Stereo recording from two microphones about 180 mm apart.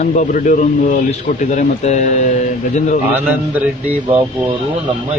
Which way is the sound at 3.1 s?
10° right (ahead or behind).